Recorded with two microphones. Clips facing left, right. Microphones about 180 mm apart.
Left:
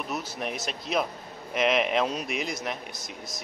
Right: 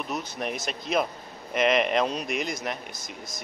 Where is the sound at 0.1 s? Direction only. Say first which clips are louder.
Right 2 dB; centre (ahead or behind).